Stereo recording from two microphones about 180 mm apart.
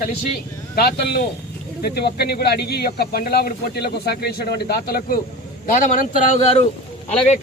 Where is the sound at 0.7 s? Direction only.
60° left (ahead or behind); by 6.6 s 35° left (ahead or behind).